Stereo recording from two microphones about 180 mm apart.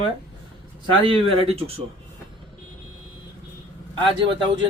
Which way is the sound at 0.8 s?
30° right (ahead or behind).